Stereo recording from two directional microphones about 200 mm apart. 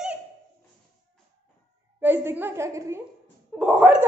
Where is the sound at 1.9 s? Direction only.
10° right (ahead or behind).